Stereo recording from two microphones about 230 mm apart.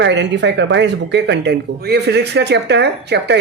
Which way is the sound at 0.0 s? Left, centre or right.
Right.